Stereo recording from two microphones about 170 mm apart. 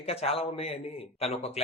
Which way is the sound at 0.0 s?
35° left (ahead or behind).